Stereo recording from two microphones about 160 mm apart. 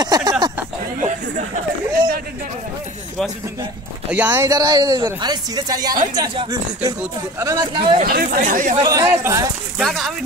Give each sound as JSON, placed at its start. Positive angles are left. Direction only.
{"t": 0.0, "sound": "a sound", "side_deg": -25}
{"t": 4.1, "sound": "speech", "side_deg": -10}
{"t": 8.0, "sound": "speech", "side_deg": -65}
{"t": 8.8, "sound": "speech", "side_deg": -25}
{"t": 9.8, "sound": "speech", "side_deg": 0}